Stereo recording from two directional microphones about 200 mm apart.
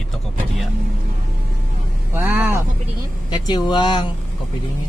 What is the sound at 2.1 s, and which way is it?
Vehicle, 10° right (ahead or behind).